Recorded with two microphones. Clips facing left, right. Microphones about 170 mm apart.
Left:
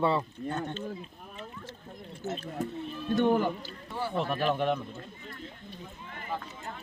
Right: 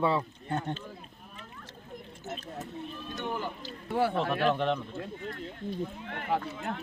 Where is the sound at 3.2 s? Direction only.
55° left (ahead or behind).